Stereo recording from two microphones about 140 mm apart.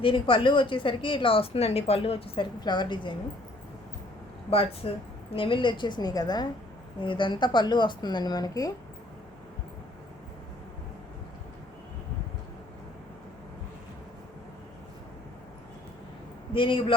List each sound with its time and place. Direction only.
0.0 s a woman's voice: 35° left (ahead or behind)
4.4 s a woman's voice: 45° left (ahead or behind); by 8.7 s 25° left (ahead or behind)
16.6 s a woman's voice: 40° left (ahead or behind)